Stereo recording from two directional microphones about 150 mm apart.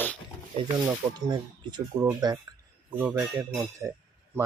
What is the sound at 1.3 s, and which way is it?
Speech, 25° right (ahead or behind).